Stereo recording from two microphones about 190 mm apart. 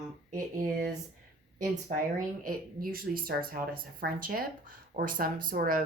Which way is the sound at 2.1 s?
45° right (ahead or behind).